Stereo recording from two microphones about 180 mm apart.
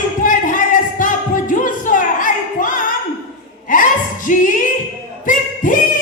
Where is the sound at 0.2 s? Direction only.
50° left (ahead or behind).